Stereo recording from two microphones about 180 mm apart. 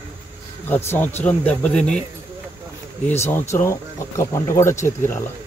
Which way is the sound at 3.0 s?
15° left (ahead or behind).